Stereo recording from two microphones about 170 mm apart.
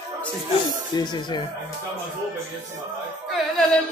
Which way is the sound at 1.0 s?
25° left (ahead or behind).